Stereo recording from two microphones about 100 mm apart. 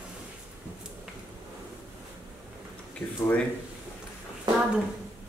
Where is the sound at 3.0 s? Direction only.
25° left (ahead or behind).